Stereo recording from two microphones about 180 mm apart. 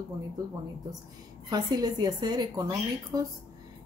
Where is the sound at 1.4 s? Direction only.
20° right (ahead or behind).